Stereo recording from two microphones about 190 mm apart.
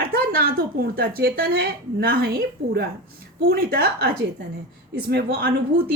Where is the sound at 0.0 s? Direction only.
50° right (ahead or behind).